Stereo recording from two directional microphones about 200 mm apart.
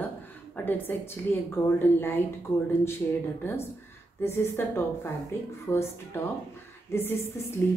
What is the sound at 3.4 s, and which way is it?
Speech, 10° left (ahead or behind).